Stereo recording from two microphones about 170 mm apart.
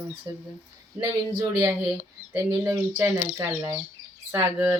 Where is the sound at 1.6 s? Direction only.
15° right (ahead or behind).